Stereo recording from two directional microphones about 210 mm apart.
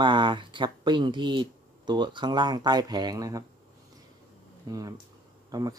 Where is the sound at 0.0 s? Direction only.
20° right (ahead or behind).